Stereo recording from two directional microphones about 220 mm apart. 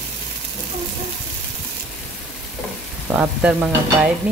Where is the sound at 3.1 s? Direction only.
5° right (ahead or behind).